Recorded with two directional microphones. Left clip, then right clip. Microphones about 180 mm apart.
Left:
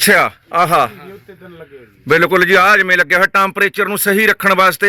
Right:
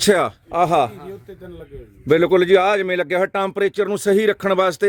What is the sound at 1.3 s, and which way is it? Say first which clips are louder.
Speech: even; 30° right (ahead or behind).